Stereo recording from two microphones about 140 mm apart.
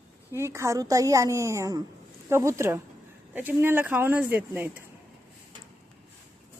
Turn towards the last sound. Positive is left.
turn(degrees=-15)  # may be behind; listen again after turning